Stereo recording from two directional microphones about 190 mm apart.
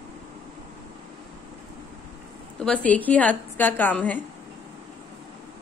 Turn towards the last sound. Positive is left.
turn(degrees=10)  # may be behind; listen again after turning